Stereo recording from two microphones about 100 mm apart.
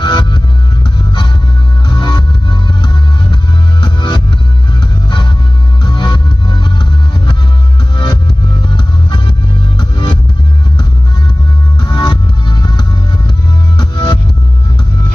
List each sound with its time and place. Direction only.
0.0 s music: 50° left (ahead or behind)
1.9 s music: 45° left (ahead or behind)
3.8 s music: 45° left (ahead or behind)
5.9 s music: 45° left (ahead or behind)
8.6 s music: 50° left (ahead or behind)
11.8 s music: 45° left (ahead or behind)